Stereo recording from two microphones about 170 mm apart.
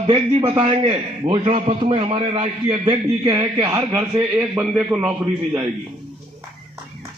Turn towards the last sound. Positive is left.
turn(degrees=-10)  # may be behind; listen again after turning